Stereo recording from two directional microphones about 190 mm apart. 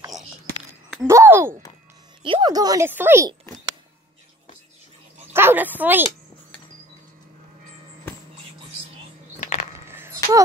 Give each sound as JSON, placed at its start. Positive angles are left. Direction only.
{"t": 1.0, "sound": "speech", "side_deg": -15}
{"t": 2.2, "sound": "speech", "side_deg": -25}
{"t": 5.3, "sound": "speech", "side_deg": -10}
{"t": 9.8, "sound": "a sound", "side_deg": -15}